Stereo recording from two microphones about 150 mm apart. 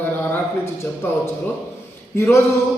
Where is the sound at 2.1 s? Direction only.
20° left (ahead or behind).